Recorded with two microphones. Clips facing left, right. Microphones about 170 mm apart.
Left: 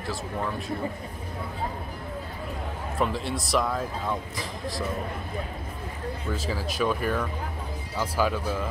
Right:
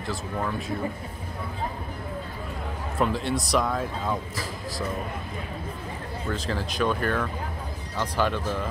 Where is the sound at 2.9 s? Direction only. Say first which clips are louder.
Right 3 dB; centre (ahead or behind).